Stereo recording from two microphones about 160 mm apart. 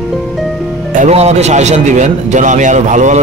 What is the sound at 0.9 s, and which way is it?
A man's voice, 45° right (ahead or behind).